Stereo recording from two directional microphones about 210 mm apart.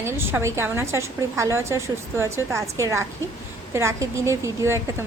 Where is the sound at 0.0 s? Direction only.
10° right (ahead or behind).